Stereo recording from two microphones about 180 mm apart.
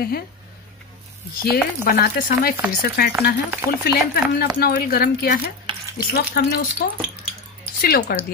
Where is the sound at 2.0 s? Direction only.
55° left (ahead or behind).